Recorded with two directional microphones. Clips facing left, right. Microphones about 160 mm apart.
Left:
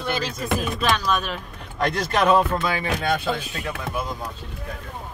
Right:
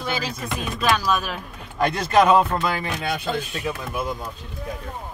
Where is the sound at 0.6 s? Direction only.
Centre (ahead or behind).